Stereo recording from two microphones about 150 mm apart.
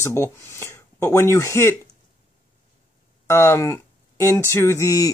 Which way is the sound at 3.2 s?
20° left (ahead or behind).